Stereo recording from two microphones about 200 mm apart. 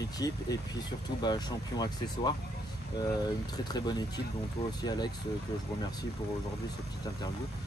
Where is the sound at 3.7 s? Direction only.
20° left (ahead or behind).